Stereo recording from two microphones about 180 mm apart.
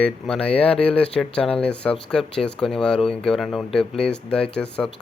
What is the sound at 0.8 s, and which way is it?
Speech, 5° left (ahead or behind).